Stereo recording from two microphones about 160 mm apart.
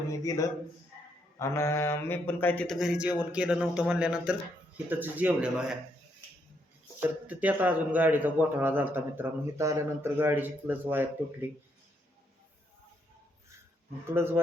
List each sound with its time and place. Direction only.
0.2 s a man's voice: 20° left (ahead or behind)
2.7 s a man's voice: 5° right (ahead or behind)
7.0 s a man's voice: 10° right (ahead or behind)
14.1 s a man's voice: 15° right (ahead or behind)